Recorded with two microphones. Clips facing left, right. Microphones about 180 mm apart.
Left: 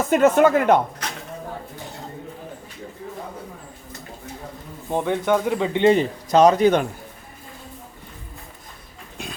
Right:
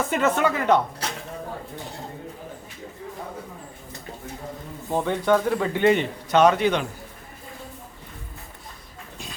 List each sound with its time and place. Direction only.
0.1 s speech: 50° left (ahead or behind)
1.0 s a sound: 30° right (ahead or behind)
4.9 s speech: 15° left (ahead or behind)
6.0 s a man's voice: 35° left (ahead or behind)